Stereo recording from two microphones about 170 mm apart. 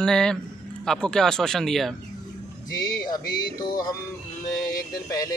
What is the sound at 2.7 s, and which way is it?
Speech, 20° left (ahead or behind).